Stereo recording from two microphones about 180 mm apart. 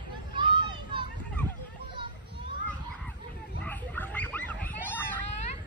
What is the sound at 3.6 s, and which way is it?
Pig, 10° left (ahead or behind).